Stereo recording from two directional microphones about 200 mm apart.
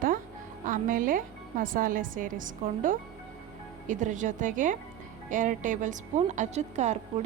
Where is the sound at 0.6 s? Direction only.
40° right (ahead or behind).